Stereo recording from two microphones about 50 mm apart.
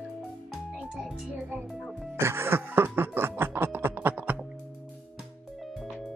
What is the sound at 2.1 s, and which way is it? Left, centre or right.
Music, right.